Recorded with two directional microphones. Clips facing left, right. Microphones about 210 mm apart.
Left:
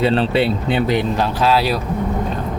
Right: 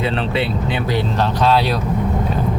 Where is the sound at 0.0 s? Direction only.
35° left (ahead or behind).